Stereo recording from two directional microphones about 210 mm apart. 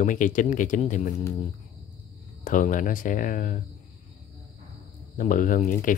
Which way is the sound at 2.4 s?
40° left (ahead or behind).